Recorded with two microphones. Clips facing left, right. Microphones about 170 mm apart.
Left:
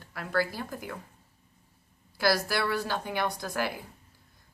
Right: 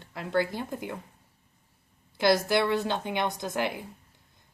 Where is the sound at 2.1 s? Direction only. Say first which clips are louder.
Right 4 dB; 20° right (ahead or behind).